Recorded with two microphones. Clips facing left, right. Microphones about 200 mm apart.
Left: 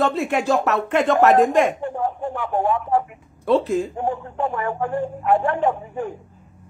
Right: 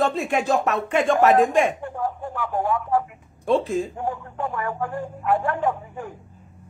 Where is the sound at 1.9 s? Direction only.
25° left (ahead or behind).